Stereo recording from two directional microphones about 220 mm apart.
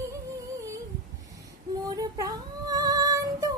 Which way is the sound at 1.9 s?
15° right (ahead or behind).